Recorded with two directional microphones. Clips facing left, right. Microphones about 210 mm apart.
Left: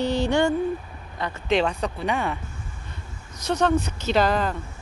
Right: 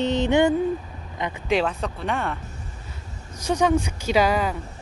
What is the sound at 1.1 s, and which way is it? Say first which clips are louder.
Speech: even; 15° right (ahead or behind).